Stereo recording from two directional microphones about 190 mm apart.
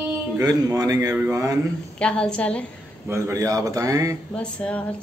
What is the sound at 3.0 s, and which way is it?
A man's voice, 15° right (ahead or behind).